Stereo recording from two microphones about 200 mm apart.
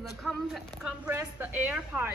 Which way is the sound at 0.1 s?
Centre (ahead or behind).